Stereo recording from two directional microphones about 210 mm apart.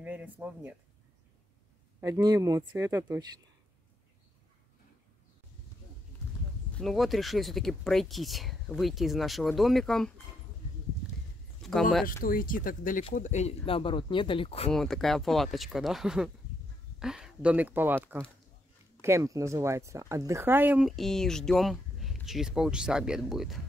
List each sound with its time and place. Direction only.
0.0 s speech: 10° right (ahead or behind)
2.0 s speech: 15° right (ahead or behind)
6.7 s speech: centre (ahead or behind)
11.6 s a sound: centre (ahead or behind)
12.2 s speech: 40° left (ahead or behind); by 14.7 s 25° left (ahead or behind)
14.7 s speech: centre (ahead or behind)